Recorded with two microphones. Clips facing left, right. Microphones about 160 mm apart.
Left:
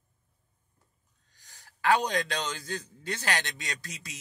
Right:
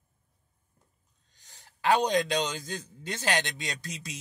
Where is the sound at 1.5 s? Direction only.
20° right (ahead or behind).